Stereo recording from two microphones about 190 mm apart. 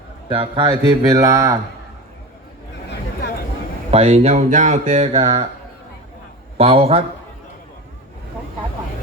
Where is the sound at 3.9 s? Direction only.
30° right (ahead or behind).